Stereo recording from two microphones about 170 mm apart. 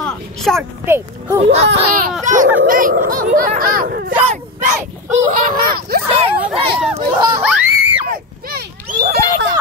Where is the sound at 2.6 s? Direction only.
55° right (ahead or behind).